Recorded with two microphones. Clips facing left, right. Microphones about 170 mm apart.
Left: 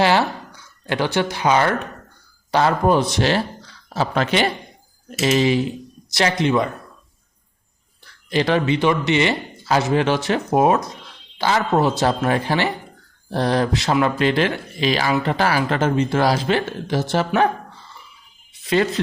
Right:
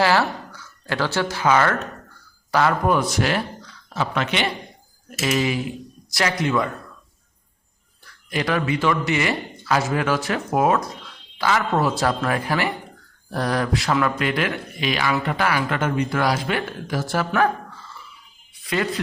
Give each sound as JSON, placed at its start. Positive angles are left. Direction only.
{"t": 0.0, "sound": "speech", "side_deg": 20}
{"t": 2.5, "sound": "speech", "side_deg": 30}
{"t": 8.0, "sound": "a man's voice", "side_deg": 25}
{"t": 18.6, "sound": "speech", "side_deg": 25}